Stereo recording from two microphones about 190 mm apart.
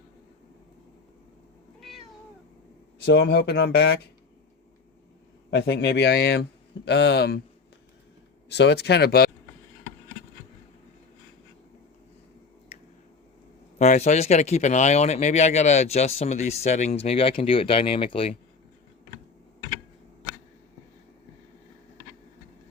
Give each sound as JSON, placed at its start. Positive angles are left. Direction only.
{"t": 3.1, "sound": "a man's voice", "side_deg": 65}
{"t": 5.5, "sound": "a man's voice", "side_deg": 65}
{"t": 8.4, "sound": "a man's voice", "side_deg": 60}
{"t": 13.7, "sound": "speech", "side_deg": 40}